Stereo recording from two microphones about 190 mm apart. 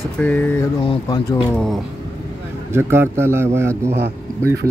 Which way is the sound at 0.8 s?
25° left (ahead or behind).